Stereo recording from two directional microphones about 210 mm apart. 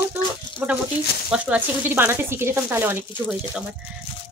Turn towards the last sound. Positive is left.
turn(degrees=-5)  # may be behind; listen again after turning